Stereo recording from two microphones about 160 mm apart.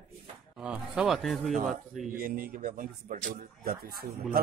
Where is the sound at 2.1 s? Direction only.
65° right (ahead or behind).